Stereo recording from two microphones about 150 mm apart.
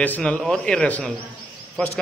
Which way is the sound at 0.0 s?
10° left (ahead or behind).